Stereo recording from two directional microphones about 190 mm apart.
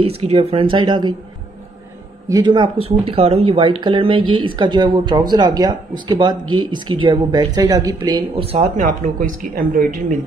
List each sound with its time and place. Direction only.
0.0 s speech: 30° right (ahead or behind)
2.2 s speech: 20° right (ahead or behind); by 9.9 s 45° right (ahead or behind)